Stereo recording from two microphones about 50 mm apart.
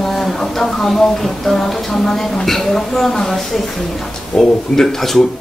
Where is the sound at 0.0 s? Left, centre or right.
Centre.